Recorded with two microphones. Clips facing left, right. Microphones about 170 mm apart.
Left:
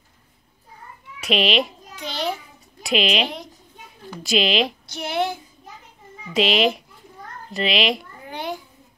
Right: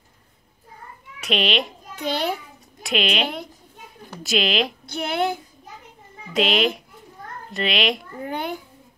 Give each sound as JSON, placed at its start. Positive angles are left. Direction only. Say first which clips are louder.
{"t": 1.2, "sound": "speech", "louder": "left 2 dB", "side_deg": 5}
{"t": 2.0, "sound": "a child's voice", "louder": "right 3 dB", "side_deg": -55}
{"t": 2.8, "sound": "speech", "louder": "left 2 dB", "side_deg": 0}
{"t": 4.2, "sound": "speech", "louder": "left 2 dB", "side_deg": 0}
{"t": 4.8, "sound": "a sound", "louder": "right 1 dB", "side_deg": -55}
{"t": 6.3, "sound": "speech", "louder": "left 2 dB", "side_deg": 0}
{"t": 8.3, "sound": "a sound", "louder": "right 1 dB", "side_deg": -55}